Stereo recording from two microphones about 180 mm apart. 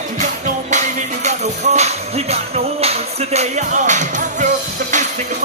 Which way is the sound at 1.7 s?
35° right (ahead or behind).